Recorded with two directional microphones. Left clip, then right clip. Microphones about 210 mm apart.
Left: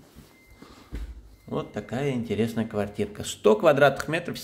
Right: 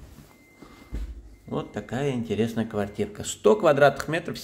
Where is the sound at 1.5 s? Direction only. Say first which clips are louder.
Even; centre (ahead or behind).